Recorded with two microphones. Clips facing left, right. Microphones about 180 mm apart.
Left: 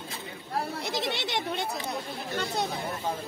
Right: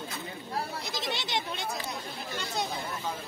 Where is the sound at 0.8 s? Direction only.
65° left (ahead or behind).